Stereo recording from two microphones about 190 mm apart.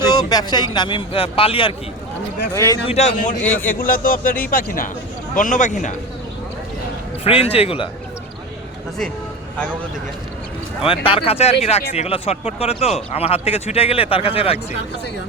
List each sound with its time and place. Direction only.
0.0 s speech: 20° left (ahead or behind)
2.9 s speech: 40° left (ahead or behind)
3.4 s speech: 10° left (ahead or behind)
3.7 s speech: 50° left (ahead or behind)
7.3 s speech: 30° left (ahead or behind)
10.8 s speech: 30° left (ahead or behind)